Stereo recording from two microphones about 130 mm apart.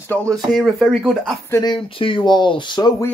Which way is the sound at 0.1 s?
5° left (ahead or behind).